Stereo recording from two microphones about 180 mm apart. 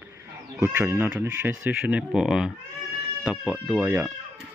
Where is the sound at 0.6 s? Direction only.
10° right (ahead or behind).